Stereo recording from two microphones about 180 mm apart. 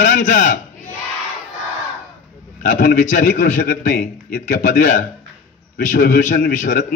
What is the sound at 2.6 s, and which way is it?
A man's voice, 50° left (ahead or behind).